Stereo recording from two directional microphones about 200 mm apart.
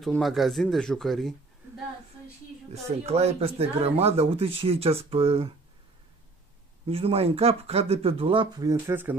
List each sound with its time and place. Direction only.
0.0 s speech: centre (ahead or behind)
2.7 s speech: 30° right (ahead or behind)
6.9 s speech: 30° right (ahead or behind); by 9.1 s 10° right (ahead or behind)